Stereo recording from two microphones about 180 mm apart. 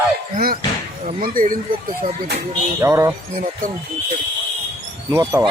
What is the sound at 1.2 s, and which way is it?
Speech, 50° right (ahead or behind).